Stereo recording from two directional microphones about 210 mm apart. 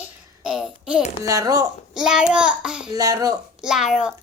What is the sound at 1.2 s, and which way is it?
Speech, 15° right (ahead or behind).